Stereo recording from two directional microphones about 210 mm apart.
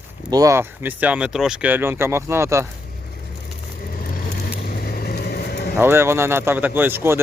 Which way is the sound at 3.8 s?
45° left (ahead or behind).